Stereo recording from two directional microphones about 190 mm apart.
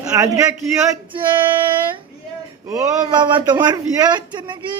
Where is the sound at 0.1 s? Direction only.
15° right (ahead or behind).